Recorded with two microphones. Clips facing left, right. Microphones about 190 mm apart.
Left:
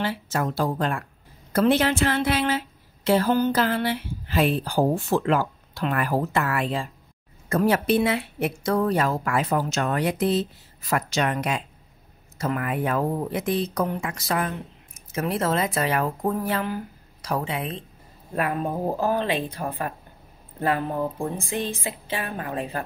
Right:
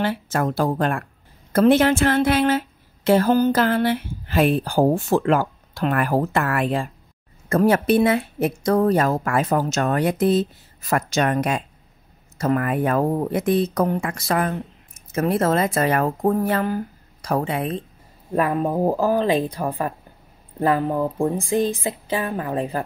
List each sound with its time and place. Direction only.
0.0 s a woman's voice: 55° right (ahead or behind)
20.8 s a woman's voice: 45° right (ahead or behind)